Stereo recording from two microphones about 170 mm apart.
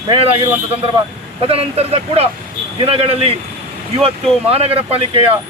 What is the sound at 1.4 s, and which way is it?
Speech, 35° right (ahead or behind).